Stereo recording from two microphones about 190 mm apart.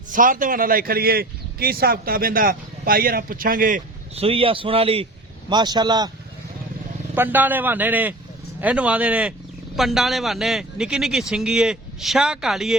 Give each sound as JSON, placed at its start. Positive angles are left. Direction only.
{"t": 0.1, "sound": "a man's voice", "side_deg": -45}
{"t": 7.2, "sound": "a man's voice", "side_deg": -10}